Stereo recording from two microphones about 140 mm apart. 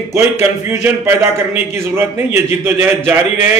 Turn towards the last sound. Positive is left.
turn(degrees=-15)  # may be behind; listen again after turning